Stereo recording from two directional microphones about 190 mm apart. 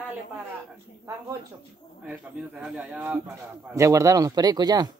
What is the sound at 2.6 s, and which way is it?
A man's voice, 5° right (ahead or behind).